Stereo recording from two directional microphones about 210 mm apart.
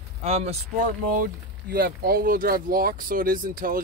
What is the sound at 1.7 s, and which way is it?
Speech, 45° right (ahead or behind).